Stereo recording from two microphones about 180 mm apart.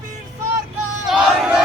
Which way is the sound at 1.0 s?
5° right (ahead or behind).